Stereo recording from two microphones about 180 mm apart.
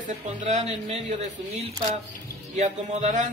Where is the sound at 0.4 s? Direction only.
40° right (ahead or behind).